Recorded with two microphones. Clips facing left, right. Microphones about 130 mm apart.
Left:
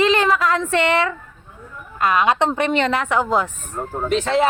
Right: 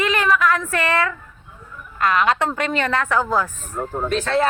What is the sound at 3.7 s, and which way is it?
Speech, centre (ahead or behind).